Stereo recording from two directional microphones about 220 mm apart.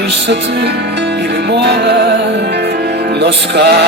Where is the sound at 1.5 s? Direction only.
50° right (ahead or behind).